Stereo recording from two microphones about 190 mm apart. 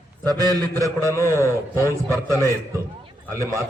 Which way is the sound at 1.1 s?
15° left (ahead or behind).